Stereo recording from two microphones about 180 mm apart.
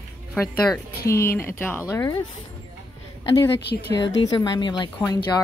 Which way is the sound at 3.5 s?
75° left (ahead or behind).